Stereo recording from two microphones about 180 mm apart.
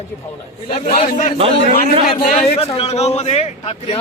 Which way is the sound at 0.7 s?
50° left (ahead or behind).